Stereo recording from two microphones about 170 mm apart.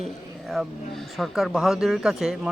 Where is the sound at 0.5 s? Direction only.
Centre (ahead or behind).